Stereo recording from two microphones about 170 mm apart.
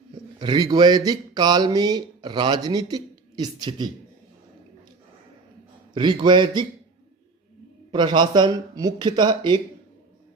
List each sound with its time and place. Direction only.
0.3 s speech: 25° right (ahead or behind)
5.9 s speech: 25° right (ahead or behind)
7.9 s speech: 25° right (ahead or behind)